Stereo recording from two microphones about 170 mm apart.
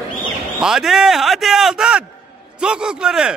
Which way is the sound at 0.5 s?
Centre (ahead or behind).